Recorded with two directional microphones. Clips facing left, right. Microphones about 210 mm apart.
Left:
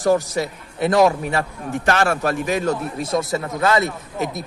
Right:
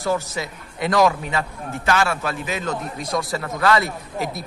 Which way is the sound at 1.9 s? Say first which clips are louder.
Left 2 dB; 45° left (ahead or behind).